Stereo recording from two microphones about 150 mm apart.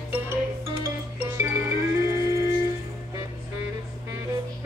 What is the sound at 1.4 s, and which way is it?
Music, 20° right (ahead or behind).